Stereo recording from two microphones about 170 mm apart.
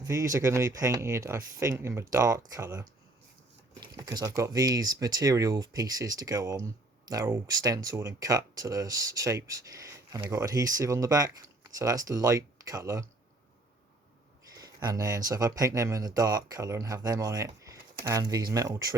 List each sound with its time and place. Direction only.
0.0 s speech: 20° right (ahead or behind)
14.5 s a sound: 25° right (ahead or behind)
15.3 s speech: 20° right (ahead or behind)